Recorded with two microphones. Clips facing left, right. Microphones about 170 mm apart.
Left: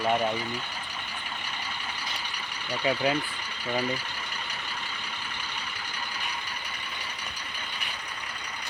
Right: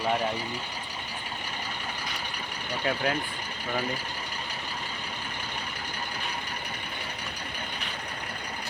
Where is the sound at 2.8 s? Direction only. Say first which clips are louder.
Left 2 dB; 5° left (ahead or behind).